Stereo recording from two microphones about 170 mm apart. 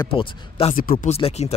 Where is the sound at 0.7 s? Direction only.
55° left (ahead or behind).